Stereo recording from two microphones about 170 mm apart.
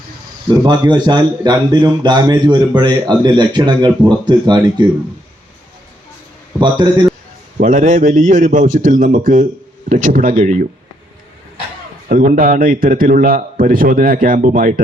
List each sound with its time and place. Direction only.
0.6 s a man's voice: 25° right (ahead or behind)
6.6 s a man's voice: 25° right (ahead or behind)
7.6 s a man's voice: 50° right (ahead or behind)
12.0 s a man's voice: 55° right (ahead or behind)